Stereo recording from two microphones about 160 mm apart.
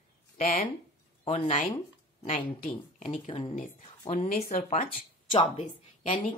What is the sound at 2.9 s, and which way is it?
Speech, 40° left (ahead or behind).